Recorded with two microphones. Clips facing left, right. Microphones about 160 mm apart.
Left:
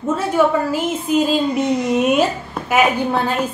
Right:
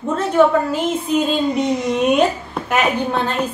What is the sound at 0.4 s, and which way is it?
A woman's voice, 10° left (ahead or behind).